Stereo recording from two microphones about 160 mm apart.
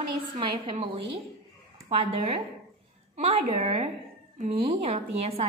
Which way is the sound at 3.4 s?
45° right (ahead or behind).